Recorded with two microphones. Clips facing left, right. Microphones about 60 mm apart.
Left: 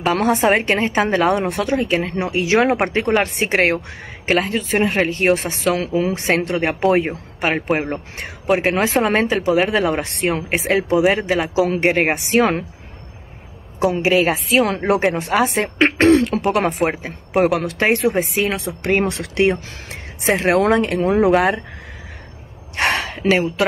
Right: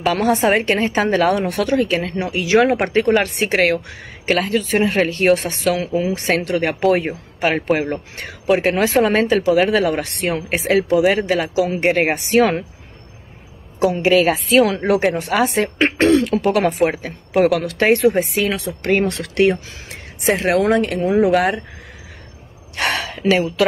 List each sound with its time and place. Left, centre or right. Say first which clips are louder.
0.0 s a woman's voice: even; left
13.7 s a woman's voice: right 1 dB; left
16.3 s a woman's voice: right 2 dB; left
22.8 s a woman's voice: left 2 dB; left